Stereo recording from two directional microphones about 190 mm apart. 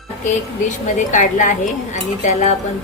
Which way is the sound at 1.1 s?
40° left (ahead or behind).